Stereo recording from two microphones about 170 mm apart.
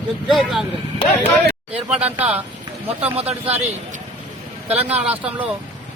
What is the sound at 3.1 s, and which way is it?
Speech, 35° right (ahead or behind).